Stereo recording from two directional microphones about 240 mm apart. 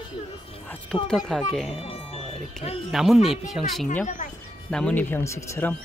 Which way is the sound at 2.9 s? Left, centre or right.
Centre.